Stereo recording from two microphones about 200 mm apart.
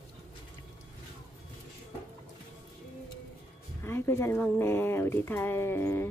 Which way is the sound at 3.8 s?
10° left (ahead or behind).